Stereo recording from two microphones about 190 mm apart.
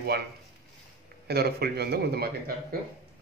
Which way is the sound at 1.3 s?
55° right (ahead or behind).